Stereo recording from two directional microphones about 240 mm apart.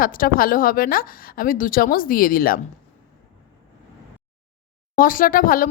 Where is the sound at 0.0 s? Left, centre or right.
Left.